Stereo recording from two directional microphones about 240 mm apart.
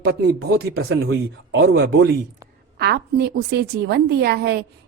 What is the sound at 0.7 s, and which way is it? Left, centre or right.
A woman's voice, right.